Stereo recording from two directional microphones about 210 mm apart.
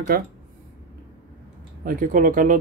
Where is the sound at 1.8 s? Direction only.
40° right (ahead or behind).